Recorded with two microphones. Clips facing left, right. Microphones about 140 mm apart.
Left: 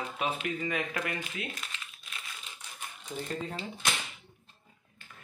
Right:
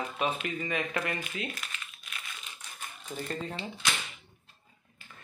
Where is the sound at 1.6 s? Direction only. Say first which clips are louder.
Right 1 dB; 30° left (ahead or behind).